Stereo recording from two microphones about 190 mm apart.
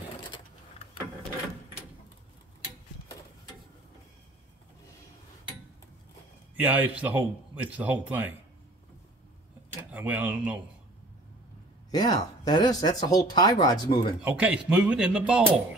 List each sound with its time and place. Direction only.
6.5 s a man's voice: 10° right (ahead or behind)
9.9 s a man's voice: 10° right (ahead or behind)
11.9 s speech: 20° left (ahead or behind)
14.2 s speech: 5° right (ahead or behind)